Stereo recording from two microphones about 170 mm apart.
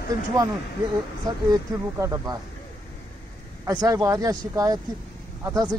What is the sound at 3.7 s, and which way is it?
Speech, 20° right (ahead or behind).